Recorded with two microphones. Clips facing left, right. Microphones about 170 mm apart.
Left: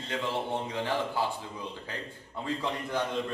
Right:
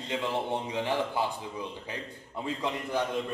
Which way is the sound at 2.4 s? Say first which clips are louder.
Even; 15° right (ahead or behind).